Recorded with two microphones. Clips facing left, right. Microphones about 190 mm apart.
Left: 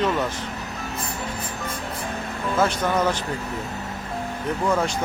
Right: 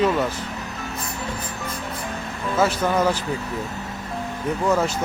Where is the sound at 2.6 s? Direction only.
10° right (ahead or behind).